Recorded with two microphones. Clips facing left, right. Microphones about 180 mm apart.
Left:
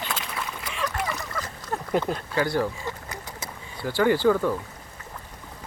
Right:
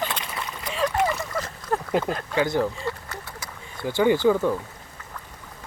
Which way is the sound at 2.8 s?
20° left (ahead or behind).